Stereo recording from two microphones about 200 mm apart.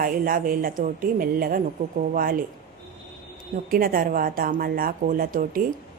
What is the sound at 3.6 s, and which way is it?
Speech, 45° right (ahead or behind).